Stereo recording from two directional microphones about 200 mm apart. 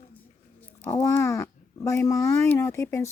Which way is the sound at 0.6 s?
10° left (ahead or behind).